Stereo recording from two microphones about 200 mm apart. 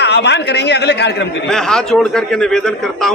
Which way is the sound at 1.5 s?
5° left (ahead or behind).